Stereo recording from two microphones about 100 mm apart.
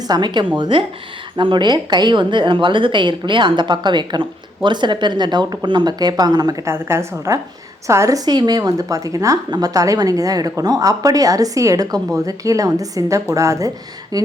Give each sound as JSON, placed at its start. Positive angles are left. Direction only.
{"t": 0.1, "sound": "a woman's voice", "side_deg": -45}
{"t": 6.7, "sound": "a woman's voice", "side_deg": -25}